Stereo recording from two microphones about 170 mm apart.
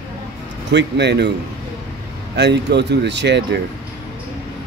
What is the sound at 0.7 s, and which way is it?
Speech, 90° right.